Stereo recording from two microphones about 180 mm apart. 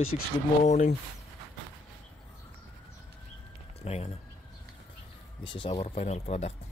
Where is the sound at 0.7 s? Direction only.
40° left (ahead or behind).